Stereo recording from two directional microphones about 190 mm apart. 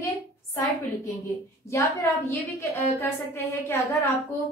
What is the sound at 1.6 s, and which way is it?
A woman's voice, 15° left (ahead or behind).